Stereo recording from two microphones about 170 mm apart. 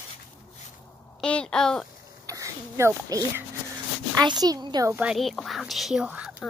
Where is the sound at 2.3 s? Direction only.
20° right (ahead or behind).